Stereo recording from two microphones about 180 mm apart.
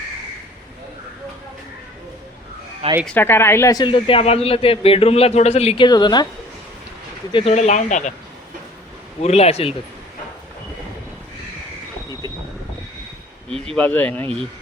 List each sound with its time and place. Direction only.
2.8 s speech: 35° right (ahead or behind)
3.2 s speech: 15° left (ahead or behind)
7.3 s speech: 35° left (ahead or behind)
9.2 s speech: 35° left (ahead or behind)
13.7 s speech: 5° left (ahead or behind)